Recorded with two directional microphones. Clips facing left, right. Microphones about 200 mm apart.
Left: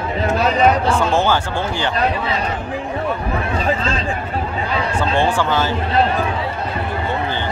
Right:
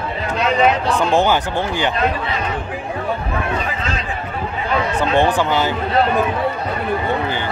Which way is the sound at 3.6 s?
30° left (ahead or behind).